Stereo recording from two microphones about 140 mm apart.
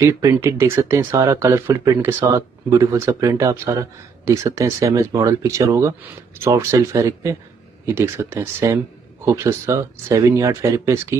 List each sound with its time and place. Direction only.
0.0 s speech: 20° right (ahead or behind)